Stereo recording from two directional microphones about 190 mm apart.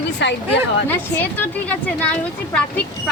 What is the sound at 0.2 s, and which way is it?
Speech, 65° left (ahead or behind).